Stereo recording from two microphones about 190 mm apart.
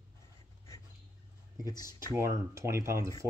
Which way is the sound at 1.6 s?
20° left (ahead or behind).